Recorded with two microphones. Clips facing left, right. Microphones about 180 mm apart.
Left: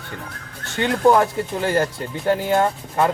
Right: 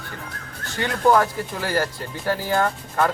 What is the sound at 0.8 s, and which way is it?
Speech, 20° left (ahead or behind).